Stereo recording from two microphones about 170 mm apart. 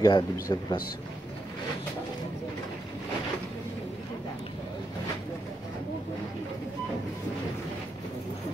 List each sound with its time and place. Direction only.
0.0 s speech: 25° left (ahead or behind)